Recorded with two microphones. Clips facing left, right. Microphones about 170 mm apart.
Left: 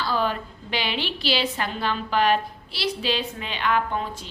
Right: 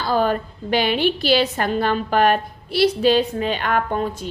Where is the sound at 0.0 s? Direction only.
45° right (ahead or behind).